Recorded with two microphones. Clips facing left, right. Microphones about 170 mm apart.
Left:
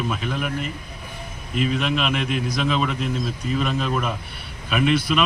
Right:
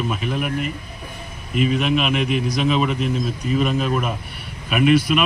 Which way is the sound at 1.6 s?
10° right (ahead or behind).